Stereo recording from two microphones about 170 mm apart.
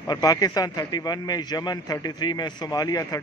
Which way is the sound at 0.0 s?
20° left (ahead or behind).